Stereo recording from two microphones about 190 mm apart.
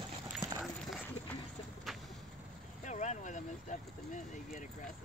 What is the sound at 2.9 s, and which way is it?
Speech, 40° left (ahead or behind).